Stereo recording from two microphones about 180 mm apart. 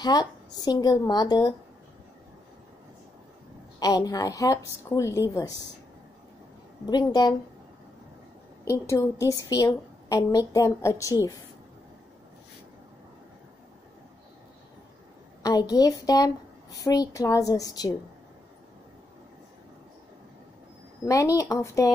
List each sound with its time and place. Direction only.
0.0 s a woman's voice: 20° left (ahead or behind)
3.8 s a woman's voice: 20° left (ahead or behind)
6.9 s a woman's voice: 25° left (ahead or behind)
8.6 s a woman's voice: 15° left (ahead or behind)
15.4 s a woman's voice: 20° left (ahead or behind)
21.0 s a woman's voice: 20° left (ahead or behind)